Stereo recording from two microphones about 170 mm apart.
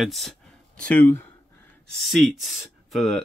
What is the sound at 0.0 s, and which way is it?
Speech, centre (ahead or behind).